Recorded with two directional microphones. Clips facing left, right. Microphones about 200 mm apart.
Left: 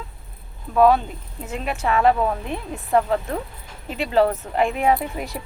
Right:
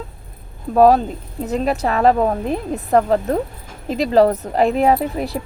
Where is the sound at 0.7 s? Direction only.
40° right (ahead or behind).